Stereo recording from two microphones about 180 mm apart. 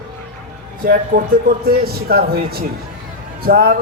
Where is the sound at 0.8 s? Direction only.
55° right (ahead or behind).